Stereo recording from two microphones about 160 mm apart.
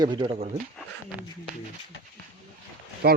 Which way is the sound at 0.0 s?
30° right (ahead or behind).